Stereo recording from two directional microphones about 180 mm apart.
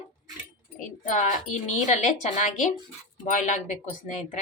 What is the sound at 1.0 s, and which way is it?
Speech, 45° left (ahead or behind).